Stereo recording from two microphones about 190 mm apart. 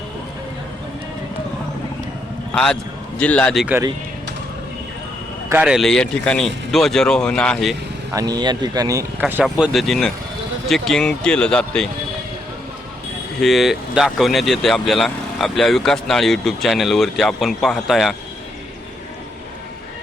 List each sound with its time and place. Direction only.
2.5 s a man's voice: 5° left (ahead or behind)
5.5 s speech: 5° right (ahead or behind)
8.1 s speech: 20° right (ahead or behind)
9.2 s speech: 5° right (ahead or behind)
13.4 s speech: centre (ahead or behind)